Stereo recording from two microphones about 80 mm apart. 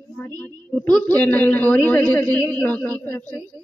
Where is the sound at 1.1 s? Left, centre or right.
Left.